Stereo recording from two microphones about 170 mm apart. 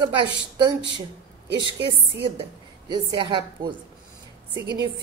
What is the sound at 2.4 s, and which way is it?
A woman's voice, 25° right (ahead or behind).